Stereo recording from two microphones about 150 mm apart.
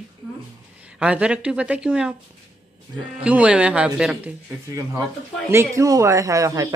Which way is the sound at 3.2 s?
10° right (ahead or behind).